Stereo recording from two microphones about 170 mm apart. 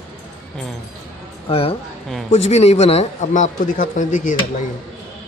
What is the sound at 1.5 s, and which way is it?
Speech, 35° left (ahead or behind).